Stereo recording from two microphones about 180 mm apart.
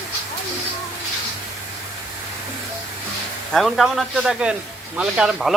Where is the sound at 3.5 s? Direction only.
Centre (ahead or behind).